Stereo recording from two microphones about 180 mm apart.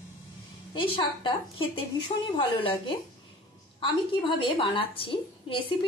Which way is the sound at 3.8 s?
25° left (ahead or behind).